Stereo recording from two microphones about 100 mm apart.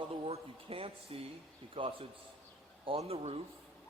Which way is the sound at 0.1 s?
75° right (ahead or behind).